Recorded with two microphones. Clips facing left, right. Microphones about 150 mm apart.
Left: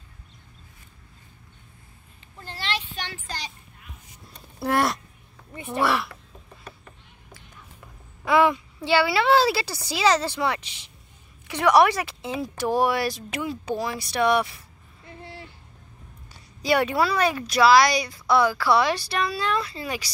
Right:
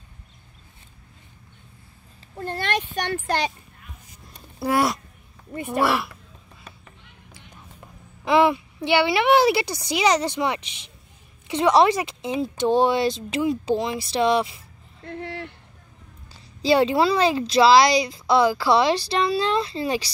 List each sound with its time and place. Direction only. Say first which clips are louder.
2.3 s a child's voice: right 6 dB; 55° right (ahead or behind)
4.6 s speech: right 2 dB; 5° right (ahead or behind)
8.3 s a woman's voice: right 2 dB; 20° right (ahead or behind)
15.0 s a sound: right 9 dB; 70° right (ahead or behind)
16.6 s a woman's voice: right 4 dB; 25° right (ahead or behind)